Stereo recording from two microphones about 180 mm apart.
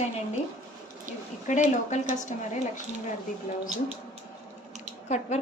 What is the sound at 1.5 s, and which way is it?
Speech, 40° left (ahead or behind).